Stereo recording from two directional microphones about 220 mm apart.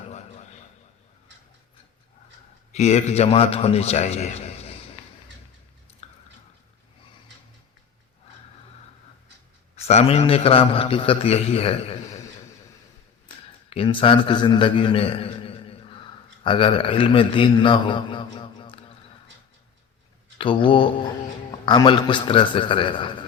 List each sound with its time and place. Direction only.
2.7 s a man's voice: 30° left (ahead or behind)
9.8 s a man's voice: 30° left (ahead or behind)
13.2 s a man's voice: 25° left (ahead or behind)
20.4 s a man's voice: 25° left (ahead or behind)